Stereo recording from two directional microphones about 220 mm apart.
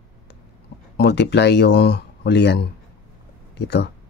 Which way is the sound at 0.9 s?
50° left (ahead or behind).